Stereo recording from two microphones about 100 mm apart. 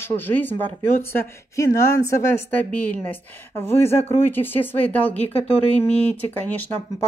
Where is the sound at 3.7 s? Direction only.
25° left (ahead or behind).